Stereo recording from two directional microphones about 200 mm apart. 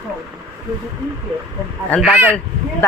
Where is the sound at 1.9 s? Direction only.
5° right (ahead or behind).